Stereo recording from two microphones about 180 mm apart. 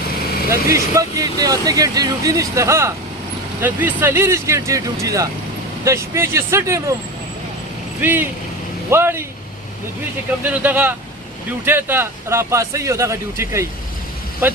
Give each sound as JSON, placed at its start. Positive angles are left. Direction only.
{"t": 0.5, "sound": "speech", "side_deg": -15}
{"t": 8.0, "sound": "speech", "side_deg": -10}
{"t": 10.6, "sound": "speech", "side_deg": -10}